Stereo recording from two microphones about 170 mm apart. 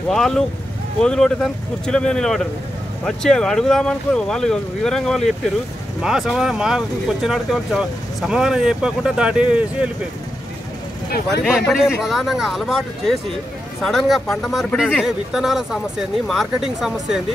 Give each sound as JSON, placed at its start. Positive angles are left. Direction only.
{"t": 0.1, "sound": "speech", "side_deg": 0}
{"t": 11.1, "sound": "speech", "side_deg": 65}
{"t": 12.0, "sound": "speech", "side_deg": 0}